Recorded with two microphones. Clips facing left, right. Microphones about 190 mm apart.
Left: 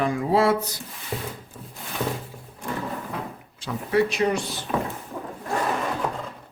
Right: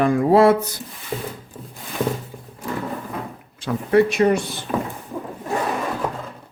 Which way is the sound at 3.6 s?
55° right (ahead or behind).